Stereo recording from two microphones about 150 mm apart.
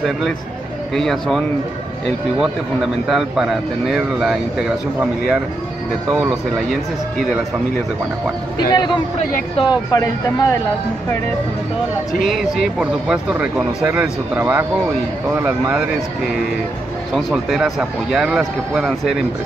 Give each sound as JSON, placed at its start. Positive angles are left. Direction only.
{"t": 0.9, "sound": "speech", "side_deg": 0}
{"t": 3.1, "sound": "speech", "side_deg": 0}
{"t": 8.5, "sound": "speech", "side_deg": 30}
{"t": 12.1, "sound": "speech", "side_deg": 0}
{"t": 17.1, "sound": "speech", "side_deg": -5}